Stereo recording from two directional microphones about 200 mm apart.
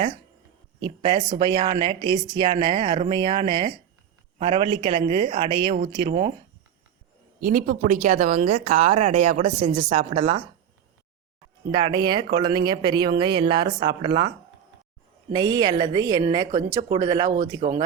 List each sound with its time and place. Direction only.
1.0 s a woman's voice: 20° right (ahead or behind)
7.4 s a woman's voice: 45° right (ahead or behind); by 10.4 s 30° right (ahead or behind)
11.7 s a woman's voice: 20° right (ahead or behind)
15.3 s a woman's voice: 20° right (ahead or behind)